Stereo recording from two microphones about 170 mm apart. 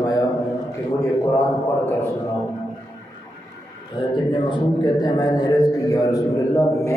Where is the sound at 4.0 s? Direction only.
25° left (ahead or behind).